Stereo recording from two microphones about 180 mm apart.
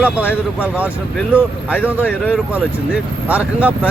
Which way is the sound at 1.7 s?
10° left (ahead or behind).